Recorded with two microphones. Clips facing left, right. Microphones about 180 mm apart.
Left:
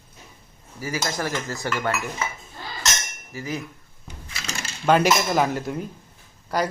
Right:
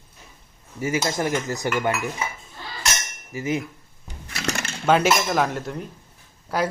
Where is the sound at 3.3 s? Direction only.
20° right (ahead or behind).